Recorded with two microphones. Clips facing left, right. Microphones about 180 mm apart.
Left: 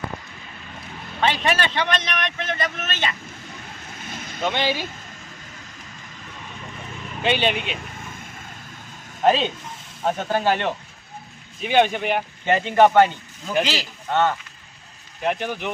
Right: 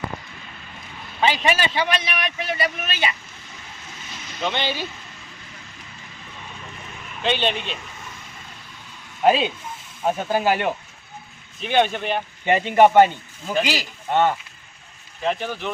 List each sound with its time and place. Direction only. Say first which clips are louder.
1.2 s a man's voice: right 1 dB; centre (ahead or behind)
4.0 s vehicle: left 6 dB; 50° left (ahead or behind)
4.4 s speech: left 2 dB; 10° left (ahead or behind)
7.2 s speech: left 1 dB; 10° left (ahead or behind)
9.2 s a man's voice: right 1 dB; 10° right (ahead or behind)
11.6 s speech: left 1 dB; 10° left (ahead or behind)
12.5 s a man's voice: right 1 dB; 15° right (ahead or behind)
15.2 s speech: even; 15° left (ahead or behind)